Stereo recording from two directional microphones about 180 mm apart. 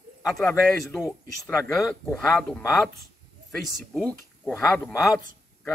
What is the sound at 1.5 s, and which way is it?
Speech, 10° left (ahead or behind).